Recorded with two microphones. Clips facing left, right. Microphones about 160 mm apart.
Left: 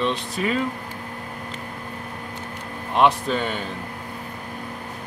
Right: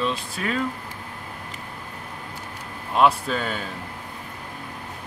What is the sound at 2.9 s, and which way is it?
Speech, centre (ahead or behind).